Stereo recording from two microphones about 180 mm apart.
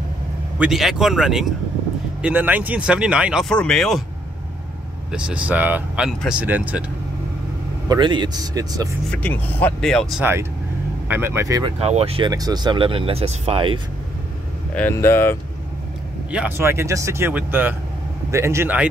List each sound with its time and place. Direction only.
0.6 s speech: centre (ahead or behind)
5.1 s speech: 5° right (ahead or behind)
7.9 s speech: 25° right (ahead or behind)
9.1 s speech: 10° left (ahead or behind)
11.1 s speech: 10° right (ahead or behind)
11.8 s speech: 35° right (ahead or behind)
12.3 s speech: 20° right (ahead or behind)
14.8 s speech: 15° left (ahead or behind)
16.3 s speech: 10° right (ahead or behind)